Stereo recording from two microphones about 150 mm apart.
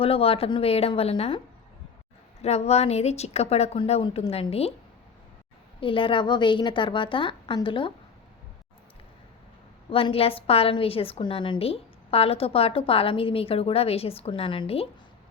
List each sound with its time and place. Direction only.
0.0 s a woman's voice: 40° left (ahead or behind)
2.4 s a woman's voice: 45° left (ahead or behind)
5.8 s a woman's voice: 35° left (ahead or behind)
9.9 s a woman's voice: 40° left (ahead or behind)